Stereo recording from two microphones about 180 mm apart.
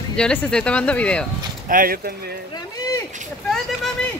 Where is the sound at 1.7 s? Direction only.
55° right (ahead or behind).